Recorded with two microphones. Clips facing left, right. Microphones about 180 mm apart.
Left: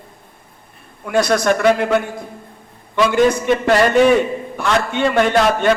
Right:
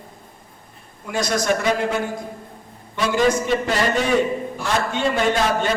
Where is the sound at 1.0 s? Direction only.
60° left (ahead or behind).